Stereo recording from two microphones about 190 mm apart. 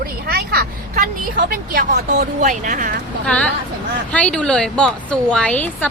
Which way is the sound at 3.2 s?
5° left (ahead or behind).